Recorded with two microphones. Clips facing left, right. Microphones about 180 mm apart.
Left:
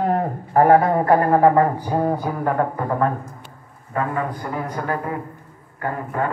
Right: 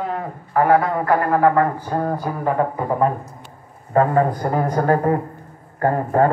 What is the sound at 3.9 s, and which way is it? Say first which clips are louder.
Speech: right 7 dB; 35° right (ahead or behind).